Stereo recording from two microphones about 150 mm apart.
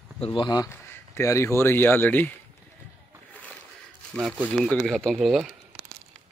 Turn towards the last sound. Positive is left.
turn(degrees=0)  # may be behind; listen again after turning